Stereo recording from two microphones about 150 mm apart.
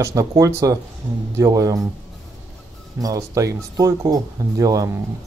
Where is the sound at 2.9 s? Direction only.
25° right (ahead or behind).